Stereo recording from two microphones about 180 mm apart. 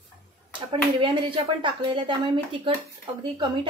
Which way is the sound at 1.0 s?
25° right (ahead or behind).